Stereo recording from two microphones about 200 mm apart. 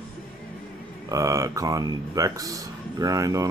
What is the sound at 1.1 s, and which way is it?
Speech, 15° right (ahead or behind).